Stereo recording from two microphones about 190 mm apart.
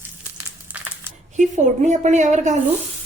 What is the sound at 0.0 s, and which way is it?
Crumpling, 10° right (ahead or behind).